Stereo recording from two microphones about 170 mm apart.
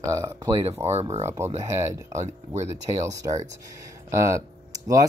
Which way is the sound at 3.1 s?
20° right (ahead or behind).